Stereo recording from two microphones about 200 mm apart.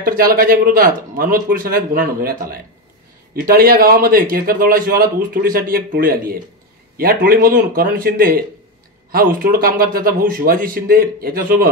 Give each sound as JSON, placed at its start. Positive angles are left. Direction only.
{"t": 0.0, "sound": "a man's voice", "side_deg": -45}